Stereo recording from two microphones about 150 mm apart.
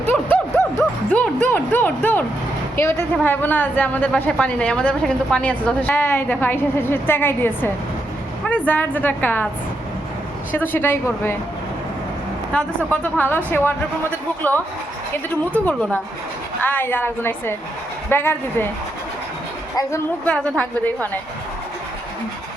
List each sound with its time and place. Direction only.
0.0 s music: 15° left (ahead or behind)
2.7 s a woman's voice: 15° left (ahead or behind)
10.5 s a woman's voice: 15° left (ahead or behind)
12.5 s a woman's voice: 10° left (ahead or behind)
15.3 s a woman's voice: 10° left (ahead or behind)
20.2 s a woman's voice: 10° left (ahead or behind)